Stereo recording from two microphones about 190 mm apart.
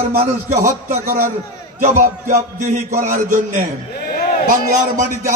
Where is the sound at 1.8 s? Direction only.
40° right (ahead or behind).